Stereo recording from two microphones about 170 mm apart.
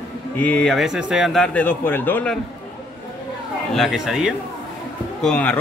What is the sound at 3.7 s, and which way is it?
A man's voice, centre (ahead or behind).